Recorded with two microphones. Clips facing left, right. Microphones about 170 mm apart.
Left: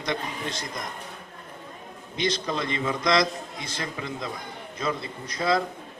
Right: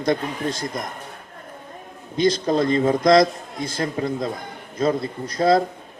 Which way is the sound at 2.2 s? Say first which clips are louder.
Right 9 dB; 45° right (ahead or behind).